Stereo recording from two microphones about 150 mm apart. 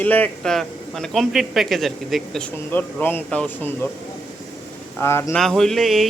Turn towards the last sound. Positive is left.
turn(degrees=0)  # may be behind; listen again after turning